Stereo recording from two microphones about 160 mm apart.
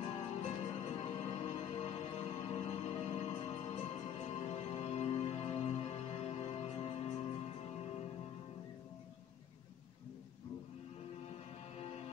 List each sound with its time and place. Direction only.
0.0 s music: 35° left (ahead or behind)